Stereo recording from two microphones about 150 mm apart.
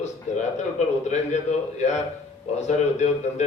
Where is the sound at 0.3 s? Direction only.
55° left (ahead or behind).